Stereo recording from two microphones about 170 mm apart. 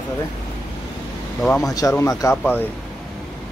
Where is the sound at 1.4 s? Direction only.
20° left (ahead or behind).